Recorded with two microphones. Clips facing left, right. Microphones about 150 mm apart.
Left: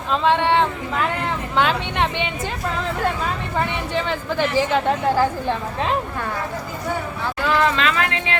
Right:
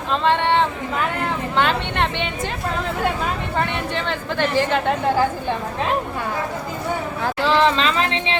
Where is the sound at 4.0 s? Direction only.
5° left (ahead or behind).